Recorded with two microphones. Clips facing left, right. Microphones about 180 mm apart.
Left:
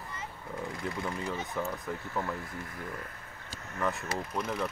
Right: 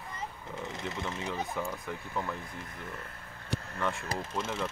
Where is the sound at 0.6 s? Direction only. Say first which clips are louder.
Left 2 dB; 20° right (ahead or behind).